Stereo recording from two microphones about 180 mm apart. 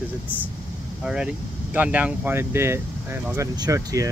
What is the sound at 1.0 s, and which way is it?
Speech, 5° right (ahead or behind).